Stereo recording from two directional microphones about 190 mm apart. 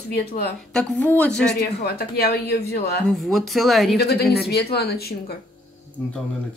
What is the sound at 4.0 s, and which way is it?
Speech, 55° left (ahead or behind).